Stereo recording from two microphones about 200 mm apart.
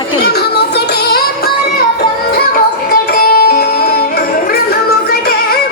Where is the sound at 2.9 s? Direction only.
50° left (ahead or behind).